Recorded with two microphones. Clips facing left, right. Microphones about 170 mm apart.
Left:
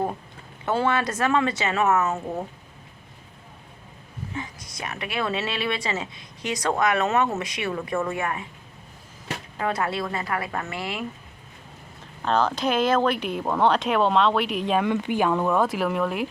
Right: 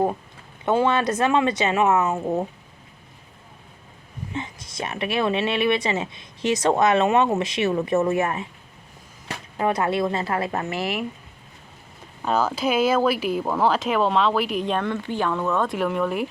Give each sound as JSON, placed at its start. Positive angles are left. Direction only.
{"t": 0.6, "sound": "speech", "side_deg": -15}
{"t": 4.4, "sound": "speech", "side_deg": -25}
{"t": 9.6, "sound": "speech", "side_deg": -20}
{"t": 12.2, "sound": "speech", "side_deg": -10}
{"t": 14.8, "sound": "speech", "side_deg": 15}